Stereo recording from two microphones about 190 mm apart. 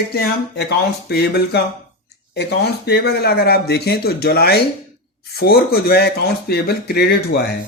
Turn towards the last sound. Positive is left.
turn(degrees=55)  # may be behind; listen again after turning